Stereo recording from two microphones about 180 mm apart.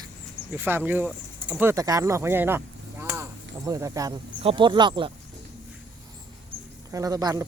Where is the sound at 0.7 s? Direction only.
10° right (ahead or behind).